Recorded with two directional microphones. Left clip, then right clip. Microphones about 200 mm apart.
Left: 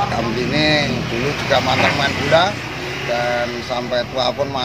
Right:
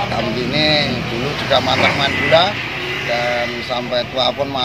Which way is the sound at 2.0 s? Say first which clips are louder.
Right 2 dB; 5° left (ahead or behind).